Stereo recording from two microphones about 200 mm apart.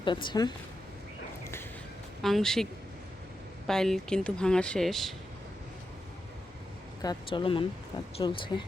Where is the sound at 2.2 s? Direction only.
Centre (ahead or behind).